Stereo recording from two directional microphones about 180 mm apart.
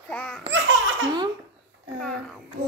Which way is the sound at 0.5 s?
90° right.